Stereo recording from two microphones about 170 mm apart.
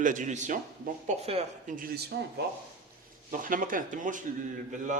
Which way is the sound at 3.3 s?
50° right (ahead or behind).